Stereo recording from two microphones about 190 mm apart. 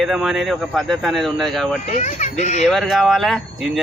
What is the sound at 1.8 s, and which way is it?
Speech, 35° left (ahead or behind).